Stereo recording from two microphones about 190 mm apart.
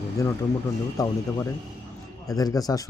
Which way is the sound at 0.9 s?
15° left (ahead or behind).